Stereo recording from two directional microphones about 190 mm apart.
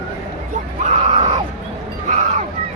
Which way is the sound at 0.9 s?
35° right (ahead or behind).